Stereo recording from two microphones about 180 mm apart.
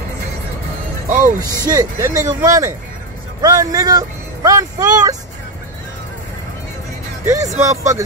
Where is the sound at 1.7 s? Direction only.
20° right (ahead or behind).